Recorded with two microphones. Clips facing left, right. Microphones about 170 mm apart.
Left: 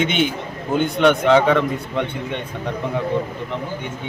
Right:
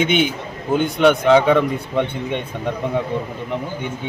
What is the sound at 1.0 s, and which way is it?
Speech, 5° right (ahead or behind).